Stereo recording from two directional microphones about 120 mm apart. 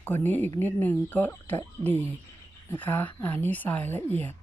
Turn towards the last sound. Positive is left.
turn(degrees=15)  # may be behind; listen again after turning